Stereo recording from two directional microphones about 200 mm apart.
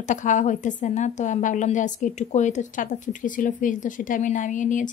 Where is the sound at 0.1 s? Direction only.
40° left (ahead or behind).